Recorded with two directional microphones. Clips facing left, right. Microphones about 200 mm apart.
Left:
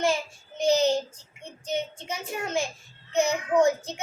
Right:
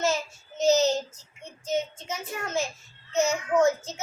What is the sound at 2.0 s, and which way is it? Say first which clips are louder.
A child's voice: left 2 dB; 15° left (ahead or behind).